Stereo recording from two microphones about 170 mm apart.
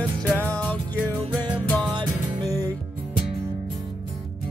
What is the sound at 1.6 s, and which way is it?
Music, 5° left (ahead or behind).